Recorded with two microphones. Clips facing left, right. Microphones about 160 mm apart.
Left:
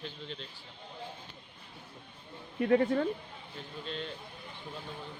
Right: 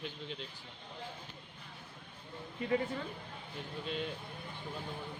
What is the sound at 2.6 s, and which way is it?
Speech, 55° left (ahead or behind).